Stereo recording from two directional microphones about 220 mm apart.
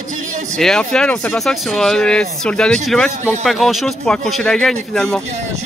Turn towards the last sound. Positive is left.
turn(degrees=0)  # may be behind; listen again after turning